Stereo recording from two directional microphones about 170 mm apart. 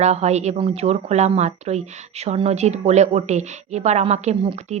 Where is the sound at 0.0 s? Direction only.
40° right (ahead or behind).